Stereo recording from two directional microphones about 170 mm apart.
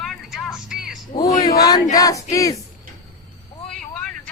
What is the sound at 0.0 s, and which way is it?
Vehicle, centre (ahead or behind).